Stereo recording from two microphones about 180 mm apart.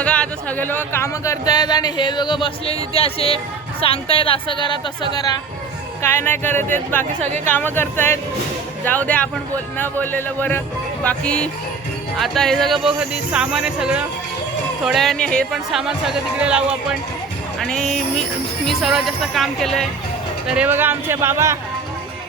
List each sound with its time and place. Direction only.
0.0 s speech: 5° left (ahead or behind)
20.5 s speech: 10° right (ahead or behind)